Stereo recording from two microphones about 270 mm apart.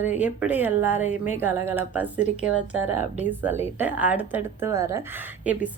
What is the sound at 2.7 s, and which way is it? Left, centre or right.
Speech, right.